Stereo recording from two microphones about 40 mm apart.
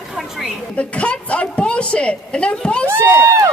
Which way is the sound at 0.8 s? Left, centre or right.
Left.